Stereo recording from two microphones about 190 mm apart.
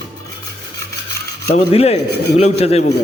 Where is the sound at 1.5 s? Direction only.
30° left (ahead or behind).